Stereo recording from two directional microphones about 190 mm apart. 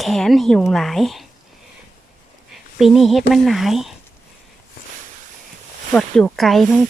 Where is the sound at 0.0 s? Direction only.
Centre (ahead or behind).